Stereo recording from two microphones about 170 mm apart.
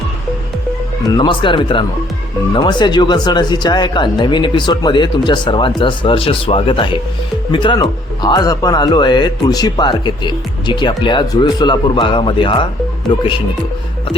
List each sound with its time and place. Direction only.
1.0 s a man's voice: 25° left (ahead or behind)